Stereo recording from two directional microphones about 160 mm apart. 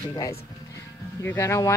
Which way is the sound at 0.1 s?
20° left (ahead or behind).